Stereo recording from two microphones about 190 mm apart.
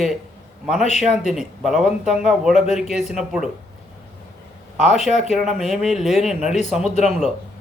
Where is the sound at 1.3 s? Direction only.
Centre (ahead or behind).